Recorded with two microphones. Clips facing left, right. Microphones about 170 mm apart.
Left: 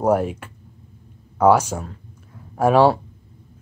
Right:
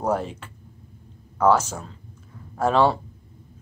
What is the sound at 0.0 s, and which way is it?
Speech, 10° left (ahead or behind).